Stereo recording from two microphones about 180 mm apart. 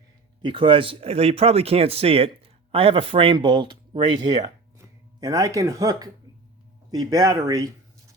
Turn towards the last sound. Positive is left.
turn(degrees=-20)  # may be behind; listen again after turning